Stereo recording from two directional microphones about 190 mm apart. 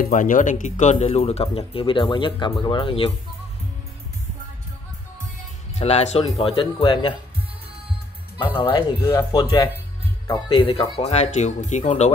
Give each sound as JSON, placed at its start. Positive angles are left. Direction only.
{"t": 0.0, "sound": "speech", "side_deg": 45}
{"t": 5.8, "sound": "speech", "side_deg": 35}
{"t": 8.5, "sound": "speech", "side_deg": 25}